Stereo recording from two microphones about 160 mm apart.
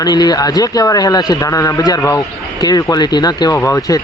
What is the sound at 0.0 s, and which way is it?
A man's voice, 25° left (ahead or behind).